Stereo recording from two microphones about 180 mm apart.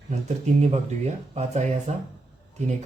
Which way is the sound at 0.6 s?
40° right (ahead or behind).